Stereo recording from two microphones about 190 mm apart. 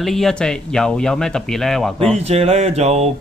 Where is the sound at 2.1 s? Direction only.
35° right (ahead or behind).